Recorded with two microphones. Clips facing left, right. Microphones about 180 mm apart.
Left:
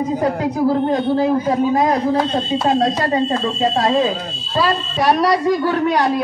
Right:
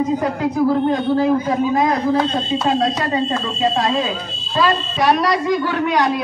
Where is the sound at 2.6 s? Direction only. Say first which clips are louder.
Left 2 dB; 35° left (ahead or behind).